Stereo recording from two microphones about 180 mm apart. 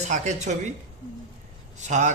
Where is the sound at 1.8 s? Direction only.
40° right (ahead or behind).